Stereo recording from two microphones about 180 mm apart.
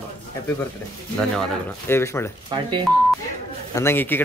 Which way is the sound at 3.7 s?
15° left (ahead or behind).